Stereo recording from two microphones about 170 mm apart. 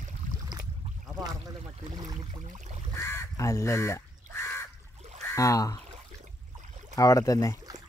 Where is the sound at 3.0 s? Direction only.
15° left (ahead or behind).